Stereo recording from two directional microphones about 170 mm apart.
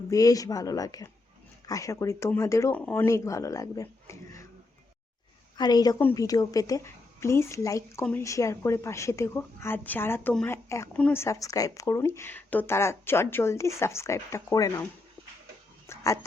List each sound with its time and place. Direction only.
0.1 s a woman's voice: 20° left (ahead or behind)
5.5 s a woman's voice: 25° left (ahead or behind)
15.9 s a sound: 15° left (ahead or behind)